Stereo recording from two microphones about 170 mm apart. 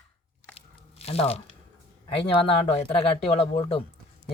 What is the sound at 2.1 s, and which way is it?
Speech, 35° left (ahead or behind).